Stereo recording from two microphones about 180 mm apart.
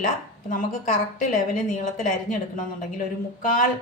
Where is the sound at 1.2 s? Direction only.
45° left (ahead or behind).